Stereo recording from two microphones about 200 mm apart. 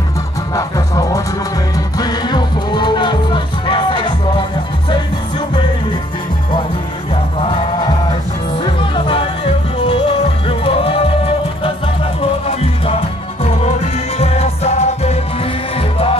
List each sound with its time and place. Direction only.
0.6 s music: 15° left (ahead or behind)
7.4 s music: 25° left (ahead or behind)